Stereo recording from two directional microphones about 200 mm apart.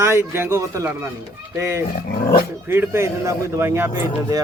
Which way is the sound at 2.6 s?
10° right (ahead or behind).